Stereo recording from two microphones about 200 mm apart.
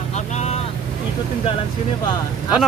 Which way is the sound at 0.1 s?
35° left (ahead or behind).